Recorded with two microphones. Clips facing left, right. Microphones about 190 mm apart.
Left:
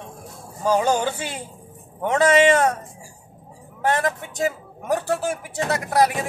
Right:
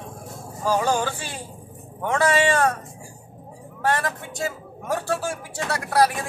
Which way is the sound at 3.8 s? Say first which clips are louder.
Left 2 dB; 20° left (ahead or behind).